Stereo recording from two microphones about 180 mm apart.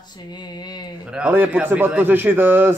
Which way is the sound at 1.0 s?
5° right (ahead or behind).